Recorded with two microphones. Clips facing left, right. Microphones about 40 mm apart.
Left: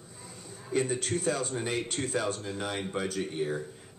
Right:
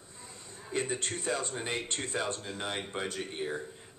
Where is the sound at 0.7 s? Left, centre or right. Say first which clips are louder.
Left 4 dB; centre.